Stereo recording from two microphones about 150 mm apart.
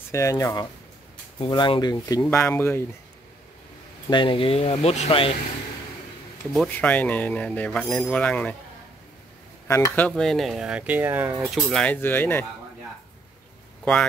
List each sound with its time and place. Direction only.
0.1 s speech: 20° left (ahead or behind)
1.4 s speech: 35° left (ahead or behind)
2.3 s speech: 15° left (ahead or behind)
4.1 s speech: 35° left (ahead or behind)
6.5 s speech: 5° left (ahead or behind)
9.7 s dishes: 25° left (ahead or behind)
9.9 s speech: 5° left (ahead or behind); by 11.4 s 15° right (ahead or behind)
11.4 s speech: centre (ahead or behind)